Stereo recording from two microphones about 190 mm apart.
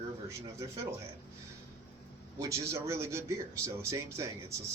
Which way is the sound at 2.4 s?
15° right (ahead or behind).